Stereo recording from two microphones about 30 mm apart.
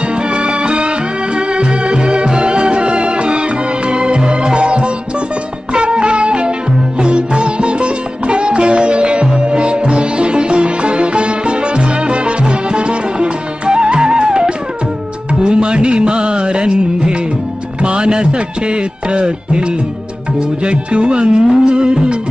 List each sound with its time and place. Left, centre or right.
0.1 s music: right
7.0 s sitar: right
15.4 s music: right